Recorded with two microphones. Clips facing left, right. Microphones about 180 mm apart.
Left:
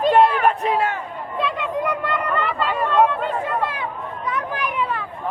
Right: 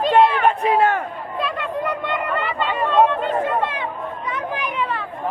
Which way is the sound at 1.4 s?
25° left (ahead or behind).